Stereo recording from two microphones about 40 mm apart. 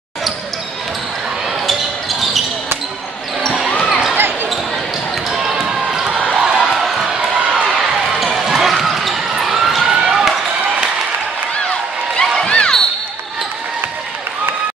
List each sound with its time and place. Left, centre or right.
1.7 s basketball bounce: centre
3.5 s basketball bounce: centre
5.3 s basketball bounce: centre
6.0 s a sound: right
6.6 s crowd: centre
7.1 s a sound: right
7.7 s basketball bounce: centre
9.4 s police car: centre
9.8 s basketball bounce: right
10.1 s run: centre
12.2 s a sound: centre
12.5 s basketball bounce: left